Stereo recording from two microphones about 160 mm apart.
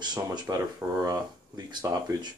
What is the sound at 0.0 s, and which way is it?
Speech, 25° right (ahead or behind).